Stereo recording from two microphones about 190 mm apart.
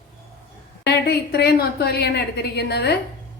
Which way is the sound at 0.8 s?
55° left (ahead or behind).